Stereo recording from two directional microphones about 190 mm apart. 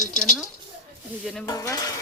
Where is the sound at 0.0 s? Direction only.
40° left (ahead or behind).